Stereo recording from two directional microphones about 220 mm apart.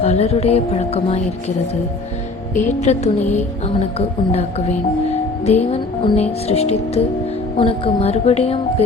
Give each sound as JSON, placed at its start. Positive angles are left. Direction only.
{"t": 0.0, "sound": "speech", "side_deg": 30}
{"t": 2.6, "sound": "speech", "side_deg": 30}
{"t": 5.5, "sound": "speech", "side_deg": 30}